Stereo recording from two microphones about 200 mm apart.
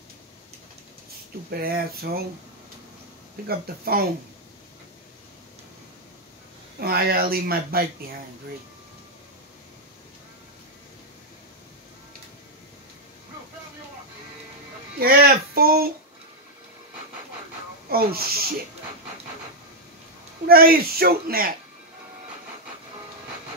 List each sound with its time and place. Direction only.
1.5 s speech: 50° right (ahead or behind)
3.4 s speech: 50° right (ahead or behind)
6.8 s speech: 50° right (ahead or behind)
15.0 s speech: 50° right (ahead or behind)
17.8 s speech: 50° right (ahead or behind)
20.4 s speech: 50° right (ahead or behind)